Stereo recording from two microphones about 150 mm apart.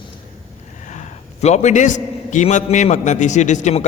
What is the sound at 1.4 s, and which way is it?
A man's voice, 50° left (ahead or behind).